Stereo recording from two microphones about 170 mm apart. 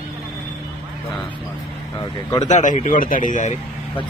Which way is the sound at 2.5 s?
45° left (ahead or behind).